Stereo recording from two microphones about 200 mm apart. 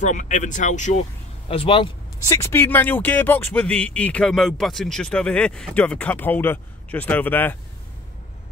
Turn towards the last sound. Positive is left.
turn(degrees=10)  # may be behind; listen again after turning